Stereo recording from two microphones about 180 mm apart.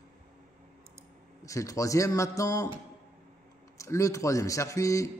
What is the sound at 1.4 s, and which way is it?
Speech, 15° left (ahead or behind).